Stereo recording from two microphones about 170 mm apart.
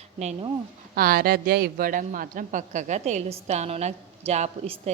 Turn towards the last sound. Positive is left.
turn(degrees=-35)  # may be behind; listen again after turning